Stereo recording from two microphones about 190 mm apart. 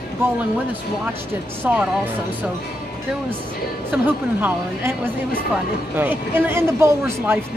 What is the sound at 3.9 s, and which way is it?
A man's voice, 10° right (ahead or behind).